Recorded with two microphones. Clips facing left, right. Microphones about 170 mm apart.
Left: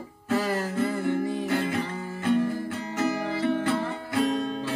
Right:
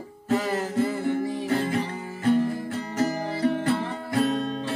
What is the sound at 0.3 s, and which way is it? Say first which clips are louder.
Music: right 1 dB; 20° right (ahead or behind).